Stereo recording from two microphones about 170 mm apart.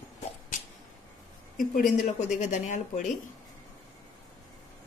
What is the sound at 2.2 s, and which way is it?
Speech, 45° left (ahead or behind).